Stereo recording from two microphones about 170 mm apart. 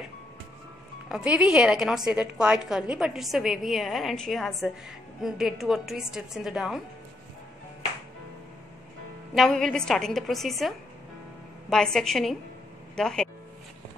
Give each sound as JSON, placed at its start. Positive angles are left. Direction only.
{"t": 1.0, "sound": "a woman's voice", "side_deg": -5}
{"t": 9.3, "sound": "a woman's voice", "side_deg": 0}
{"t": 11.7, "sound": "a woman's voice", "side_deg": 5}